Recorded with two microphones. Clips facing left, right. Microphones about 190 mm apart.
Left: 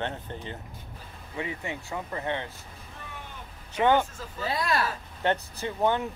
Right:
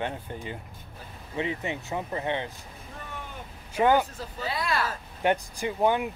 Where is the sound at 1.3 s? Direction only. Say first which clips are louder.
Right 4 dB; 20° right (ahead or behind).